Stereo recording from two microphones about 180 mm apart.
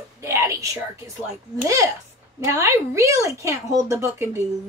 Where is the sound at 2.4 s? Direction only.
15° right (ahead or behind).